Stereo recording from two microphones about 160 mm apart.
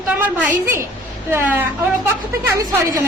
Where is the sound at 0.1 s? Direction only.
10° right (ahead or behind).